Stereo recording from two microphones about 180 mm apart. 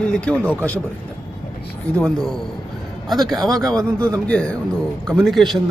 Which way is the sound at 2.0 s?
5° left (ahead or behind).